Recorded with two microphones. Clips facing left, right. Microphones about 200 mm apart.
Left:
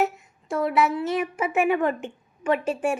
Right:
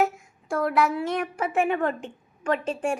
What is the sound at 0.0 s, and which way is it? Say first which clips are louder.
A woman's voice: even; centre (ahead or behind).